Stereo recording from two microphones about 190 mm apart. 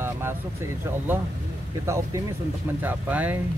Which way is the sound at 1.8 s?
15° right (ahead or behind).